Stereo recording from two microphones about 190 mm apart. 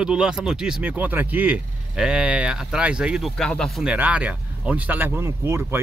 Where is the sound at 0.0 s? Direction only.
5° right (ahead or behind).